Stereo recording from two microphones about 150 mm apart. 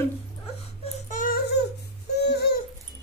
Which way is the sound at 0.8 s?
50° left (ahead or behind).